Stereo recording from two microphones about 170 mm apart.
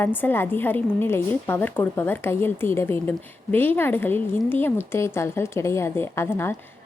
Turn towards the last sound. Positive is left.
turn(degrees=15)  # may be behind; listen again after turning